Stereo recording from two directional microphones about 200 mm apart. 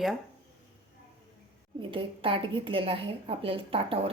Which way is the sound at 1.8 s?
25° right (ahead or behind).